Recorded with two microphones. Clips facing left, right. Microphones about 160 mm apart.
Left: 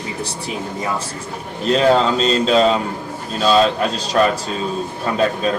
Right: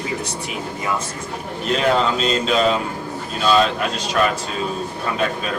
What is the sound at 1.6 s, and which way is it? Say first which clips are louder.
Speech: left 4 dB; 35° left (ahead or behind).